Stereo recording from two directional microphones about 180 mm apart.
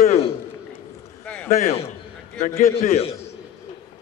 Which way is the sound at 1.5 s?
40° left (ahead or behind).